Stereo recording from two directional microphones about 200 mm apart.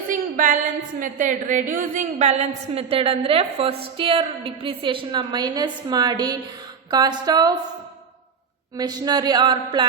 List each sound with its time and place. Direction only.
0.1 s a sound: 40° right (ahead or behind)
0.9 s a woman's voice: 40° right (ahead or behind); by 7.5 s 20° right (ahead or behind)
8.7 s a woman's voice: 20° right (ahead or behind)